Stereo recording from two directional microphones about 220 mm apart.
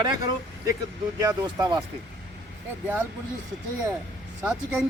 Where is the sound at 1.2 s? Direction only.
15° right (ahead or behind).